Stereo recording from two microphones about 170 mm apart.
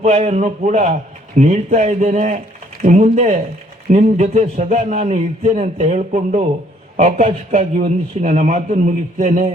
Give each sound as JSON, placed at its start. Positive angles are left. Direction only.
{"t": 0.0, "sound": "a man's voice", "side_deg": -40}